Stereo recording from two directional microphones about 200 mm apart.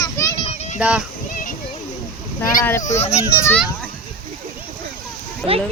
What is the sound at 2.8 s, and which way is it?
Speech, 35° left (ahead or behind).